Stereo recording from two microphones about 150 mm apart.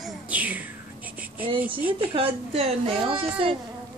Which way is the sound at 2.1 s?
40° right (ahead or behind).